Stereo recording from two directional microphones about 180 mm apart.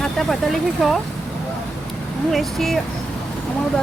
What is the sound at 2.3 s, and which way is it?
Speech, centre (ahead or behind).